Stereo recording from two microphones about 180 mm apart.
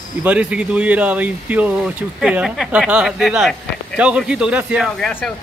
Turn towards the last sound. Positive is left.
turn(degrees=10)  # may be behind; listen again after turning